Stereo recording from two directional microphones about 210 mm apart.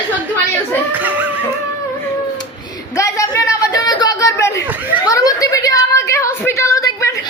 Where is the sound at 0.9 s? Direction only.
5° right (ahead or behind).